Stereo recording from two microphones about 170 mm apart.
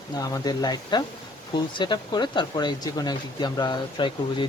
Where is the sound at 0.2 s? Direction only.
25° left (ahead or behind).